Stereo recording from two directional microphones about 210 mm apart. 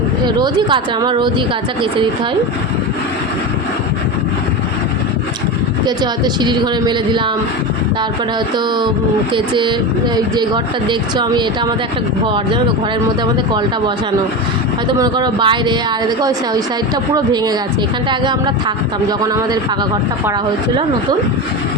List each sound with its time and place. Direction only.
0.3 s speech: 20° right (ahead or behind)
5.8 s speech: 20° right (ahead or behind)
9.3 s speech: 20° right (ahead or behind)
14.8 s speech: 20° right (ahead or behind)